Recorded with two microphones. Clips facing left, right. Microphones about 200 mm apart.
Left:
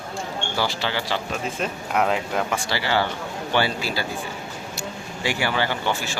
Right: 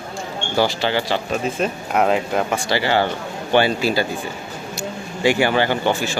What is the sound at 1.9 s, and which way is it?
Speech, 30° right (ahead or behind).